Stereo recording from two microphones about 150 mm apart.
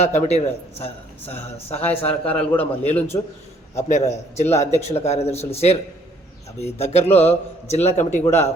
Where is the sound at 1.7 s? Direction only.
45° left (ahead or behind).